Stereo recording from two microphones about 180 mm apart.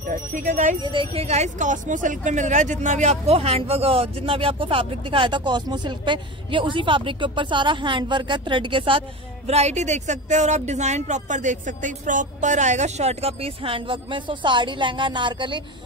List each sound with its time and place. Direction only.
0.1 s speech: 45° right (ahead or behind)
0.8 s speech: 30° right (ahead or behind)